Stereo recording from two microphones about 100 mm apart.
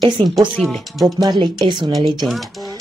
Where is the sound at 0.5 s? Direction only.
5° left (ahead or behind).